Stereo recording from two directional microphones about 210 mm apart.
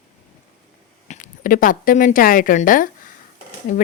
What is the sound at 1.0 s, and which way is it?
A woman's voice, 35° left (ahead or behind).